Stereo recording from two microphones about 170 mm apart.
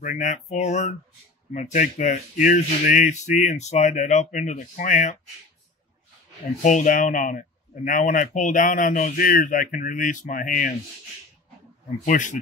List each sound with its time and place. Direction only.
0.0 s speech: 45° left (ahead or behind)
6.6 s speech: 50° left (ahead or behind)
12.0 s speech: 50° left (ahead or behind)